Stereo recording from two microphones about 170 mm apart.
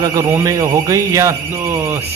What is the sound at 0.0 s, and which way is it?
Speech, 20° right (ahead or behind).